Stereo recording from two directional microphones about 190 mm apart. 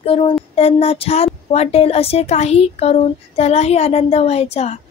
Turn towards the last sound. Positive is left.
turn(degrees=35)  # may be behind; listen again after turning